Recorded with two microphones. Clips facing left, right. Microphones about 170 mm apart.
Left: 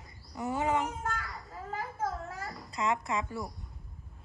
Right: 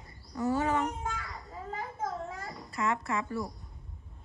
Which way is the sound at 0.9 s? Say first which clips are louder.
Left 1 dB; centre (ahead or behind).